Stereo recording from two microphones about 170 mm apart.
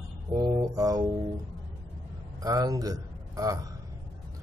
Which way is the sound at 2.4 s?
20° right (ahead or behind).